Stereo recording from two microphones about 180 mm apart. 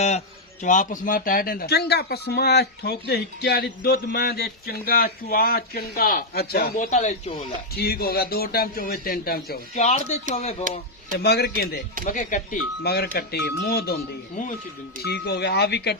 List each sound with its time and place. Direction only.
0.6 s speech: 45° left (ahead or behind)
7.8 s speech: 60° left (ahead or behind)
9.7 s speech: 40° left (ahead or behind)
10.7 s speech: 50° right (ahead or behind)
11.2 s speech: 60° left (ahead or behind)
12.0 s speech: 45° left (ahead or behind); by 13.9 s 65° left (ahead or behind)
15.0 s speech: 70° left (ahead or behind)